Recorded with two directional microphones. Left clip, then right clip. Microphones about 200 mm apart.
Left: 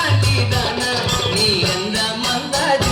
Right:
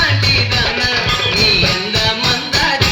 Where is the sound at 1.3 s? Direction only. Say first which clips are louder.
Right 5 dB; 30° left (ahead or behind).